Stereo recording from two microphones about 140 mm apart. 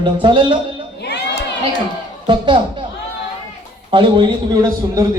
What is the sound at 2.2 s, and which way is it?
Speech, 35° right (ahead or behind).